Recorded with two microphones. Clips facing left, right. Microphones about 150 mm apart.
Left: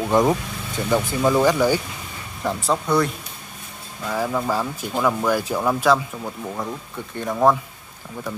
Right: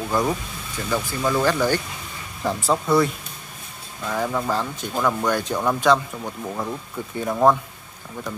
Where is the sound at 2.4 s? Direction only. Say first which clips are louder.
Right 1 dB; centre (ahead or behind).